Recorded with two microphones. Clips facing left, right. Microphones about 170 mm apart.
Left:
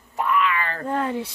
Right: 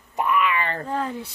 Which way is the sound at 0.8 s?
65° left (ahead or behind).